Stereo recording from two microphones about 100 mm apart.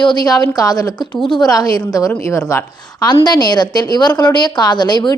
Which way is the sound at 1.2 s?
55° left (ahead or behind).